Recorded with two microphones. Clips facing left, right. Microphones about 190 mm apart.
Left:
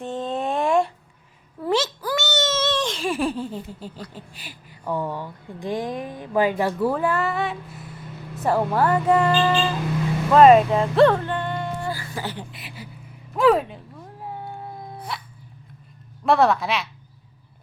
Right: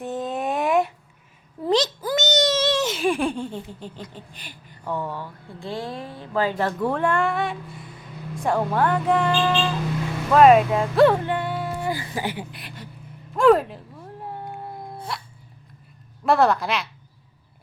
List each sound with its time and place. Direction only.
0.0 s a sound: 5° right (ahead or behind)
2.0 s babbling: 20° right (ahead or behind); by 4.0 s 5° left (ahead or behind)
4.1 s speech: 5° left (ahead or behind)
11.2 s music: 10° right (ahead or behind)
11.8 s music: 15° right (ahead or behind)
12.5 s speech: centre (ahead or behind)
13.3 s a sound: centre (ahead or behind)
16.2 s speech: centre (ahead or behind)